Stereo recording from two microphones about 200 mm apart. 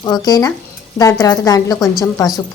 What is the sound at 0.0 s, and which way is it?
Speech, 20° left (ahead or behind).